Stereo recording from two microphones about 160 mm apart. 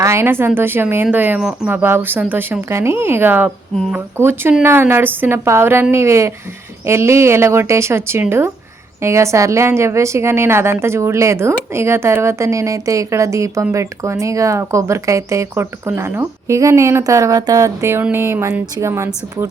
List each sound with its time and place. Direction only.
0.0 s a woman's voice: 15° right (ahead or behind)